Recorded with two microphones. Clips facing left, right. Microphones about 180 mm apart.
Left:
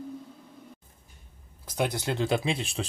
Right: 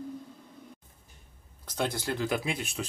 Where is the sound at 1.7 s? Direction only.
15° left (ahead or behind).